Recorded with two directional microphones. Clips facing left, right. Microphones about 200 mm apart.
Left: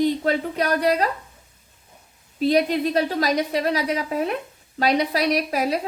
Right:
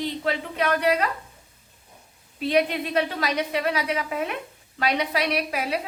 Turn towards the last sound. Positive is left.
turn(degrees=40)  # may be behind; listen again after turning